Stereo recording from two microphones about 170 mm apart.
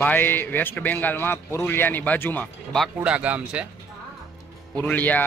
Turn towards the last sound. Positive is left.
turn(degrees=10)  # may be behind; listen again after turning